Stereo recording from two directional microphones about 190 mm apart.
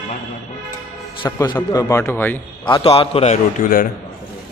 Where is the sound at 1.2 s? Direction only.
20° left (ahead or behind).